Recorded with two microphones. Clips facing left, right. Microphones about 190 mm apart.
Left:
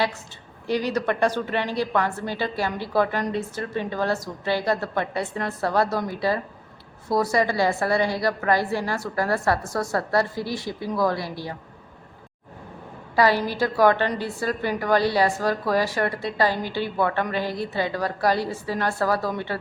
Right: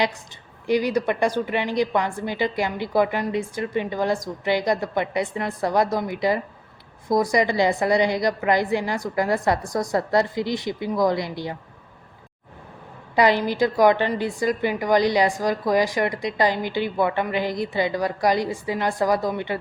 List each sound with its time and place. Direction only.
0.7 s a woman's voice: 10° right (ahead or behind)
13.1 s a woman's voice: 20° right (ahead or behind)